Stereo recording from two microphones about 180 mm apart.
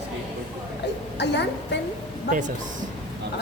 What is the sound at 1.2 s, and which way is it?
Speech, 70° left (ahead or behind).